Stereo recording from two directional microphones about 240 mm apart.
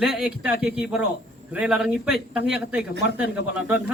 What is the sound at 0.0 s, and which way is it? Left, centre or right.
Speech, centre.